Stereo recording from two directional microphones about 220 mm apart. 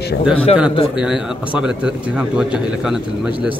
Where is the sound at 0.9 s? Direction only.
5° right (ahead or behind).